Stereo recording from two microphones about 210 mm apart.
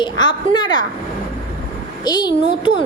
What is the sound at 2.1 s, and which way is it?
Speech, 20° left (ahead or behind).